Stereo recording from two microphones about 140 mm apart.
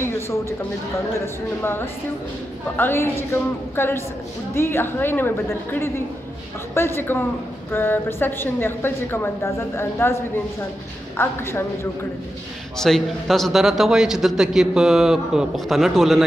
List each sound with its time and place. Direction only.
0.0 s a sound: 20° left (ahead or behind)
1.2 s a woman's voice: 15° left (ahead or behind)
11.1 s a woman's voice: 15° left (ahead or behind)
12.7 s a man's voice: 5° left (ahead or behind)